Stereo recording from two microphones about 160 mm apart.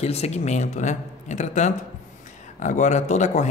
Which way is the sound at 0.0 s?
40° left (ahead or behind).